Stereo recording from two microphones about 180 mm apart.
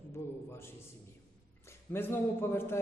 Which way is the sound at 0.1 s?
15° left (ahead or behind).